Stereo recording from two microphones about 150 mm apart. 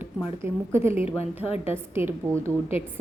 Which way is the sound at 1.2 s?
40° left (ahead or behind).